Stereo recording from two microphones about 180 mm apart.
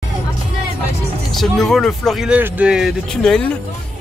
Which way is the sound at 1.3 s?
Centre (ahead or behind).